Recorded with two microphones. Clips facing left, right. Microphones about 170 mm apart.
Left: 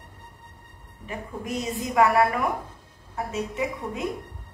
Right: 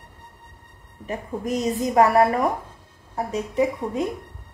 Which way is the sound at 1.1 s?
40° right (ahead or behind).